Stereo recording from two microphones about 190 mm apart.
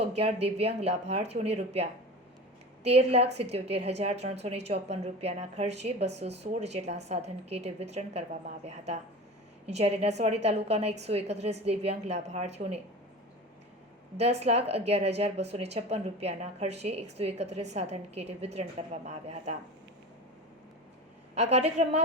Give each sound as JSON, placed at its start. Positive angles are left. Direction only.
{"t": 0.0, "sound": "a woman's voice", "side_deg": -30}
{"t": 14.2, "sound": "a woman's voice", "side_deg": -35}
{"t": 21.3, "sound": "a woman's voice", "side_deg": -35}